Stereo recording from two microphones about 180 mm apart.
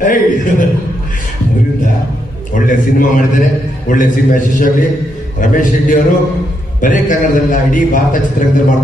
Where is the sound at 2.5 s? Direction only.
45° left (ahead or behind).